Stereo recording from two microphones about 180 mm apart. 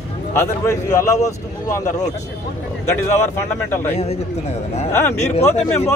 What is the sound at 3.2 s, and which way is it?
Speech, 15° left (ahead or behind).